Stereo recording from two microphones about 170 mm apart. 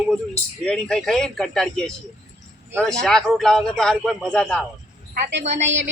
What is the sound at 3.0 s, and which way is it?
A man's voice, centre (ahead or behind).